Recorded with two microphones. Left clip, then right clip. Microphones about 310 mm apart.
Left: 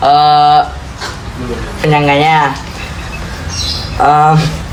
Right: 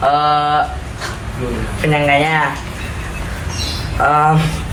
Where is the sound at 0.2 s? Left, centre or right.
Left.